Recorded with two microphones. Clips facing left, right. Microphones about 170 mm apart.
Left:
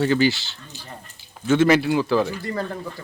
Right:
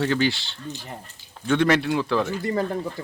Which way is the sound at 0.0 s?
Centre (ahead or behind).